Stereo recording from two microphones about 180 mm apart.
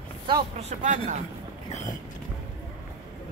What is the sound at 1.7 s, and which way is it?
Boat, 40° left (ahead or behind).